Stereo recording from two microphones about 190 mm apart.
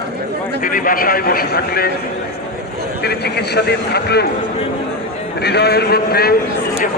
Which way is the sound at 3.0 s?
60° left (ahead or behind).